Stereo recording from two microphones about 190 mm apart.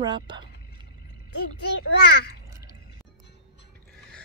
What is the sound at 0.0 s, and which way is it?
Speech, 25° right (ahead or behind).